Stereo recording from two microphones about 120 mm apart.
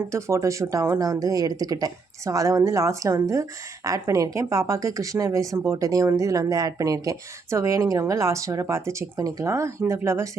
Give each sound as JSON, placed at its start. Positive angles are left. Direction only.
{"t": 0.1, "sound": "speech", "side_deg": -25}